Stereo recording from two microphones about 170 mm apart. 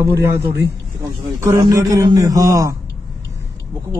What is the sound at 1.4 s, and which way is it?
A man's voice, 20° right (ahead or behind).